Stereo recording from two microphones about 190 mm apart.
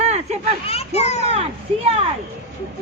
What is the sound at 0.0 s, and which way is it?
Children playing, 35° right (ahead or behind).